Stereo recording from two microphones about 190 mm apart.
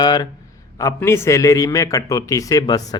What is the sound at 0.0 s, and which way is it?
A man's voice, 20° left (ahead or behind).